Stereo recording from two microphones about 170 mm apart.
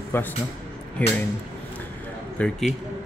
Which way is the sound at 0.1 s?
10° left (ahead or behind).